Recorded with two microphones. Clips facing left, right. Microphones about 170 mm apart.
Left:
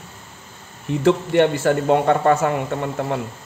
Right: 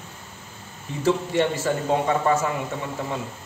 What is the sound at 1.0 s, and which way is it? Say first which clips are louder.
Speech: left 5 dB; 65° left (ahead or behind).